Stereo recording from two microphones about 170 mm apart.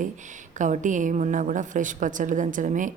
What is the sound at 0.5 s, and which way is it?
A woman's voice, 45° right (ahead or behind).